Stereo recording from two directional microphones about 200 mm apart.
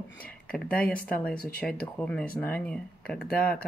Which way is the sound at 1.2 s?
5° left (ahead or behind).